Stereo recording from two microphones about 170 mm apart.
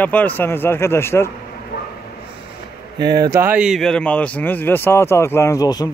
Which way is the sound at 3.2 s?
15° right (ahead or behind).